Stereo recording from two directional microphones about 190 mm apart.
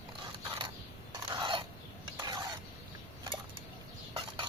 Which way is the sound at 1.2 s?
25° right (ahead or behind).